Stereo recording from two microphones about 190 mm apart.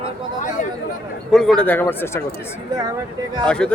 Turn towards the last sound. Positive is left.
turn(degrees=5)  # may be behind; listen again after turning